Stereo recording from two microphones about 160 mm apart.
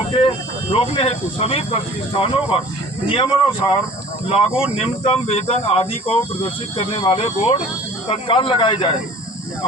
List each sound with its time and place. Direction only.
0.1 s speech: 35° left (ahead or behind)
4.5 s speech: 5° right (ahead or behind)
4.8 s speech: 40° left (ahead or behind)